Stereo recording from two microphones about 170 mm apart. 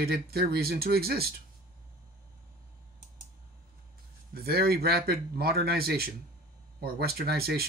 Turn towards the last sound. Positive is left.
turn(degrees=-65)  # may be behind; listen again after turning